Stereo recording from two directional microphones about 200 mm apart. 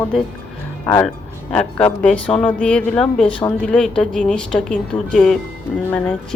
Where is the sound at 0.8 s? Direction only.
10° left (ahead or behind).